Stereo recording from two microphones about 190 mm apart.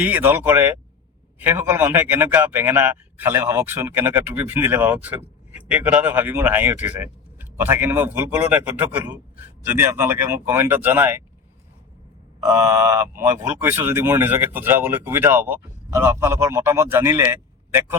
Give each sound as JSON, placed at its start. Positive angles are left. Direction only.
{"t": 0.0, "sound": "a man's voice", "side_deg": -10}
{"t": 12.5, "sound": "a man's voice", "side_deg": -15}